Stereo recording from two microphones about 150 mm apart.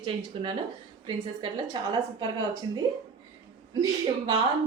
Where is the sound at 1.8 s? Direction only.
30° right (ahead or behind).